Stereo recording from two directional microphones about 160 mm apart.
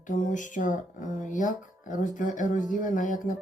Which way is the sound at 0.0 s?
55° left (ahead or behind).